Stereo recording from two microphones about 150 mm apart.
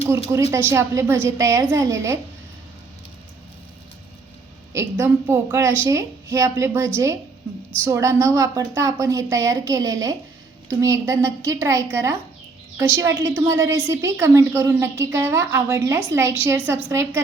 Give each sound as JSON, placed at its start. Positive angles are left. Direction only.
{"t": 0.5, "sound": "a woman's voice", "side_deg": -20}
{"t": 4.7, "sound": "a woman's voice", "side_deg": -20}